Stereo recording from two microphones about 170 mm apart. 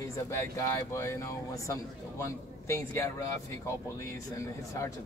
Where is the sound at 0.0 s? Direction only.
20° left (ahead or behind).